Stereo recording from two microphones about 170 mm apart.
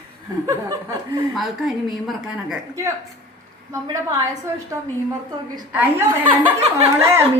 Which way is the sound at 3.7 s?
15° right (ahead or behind).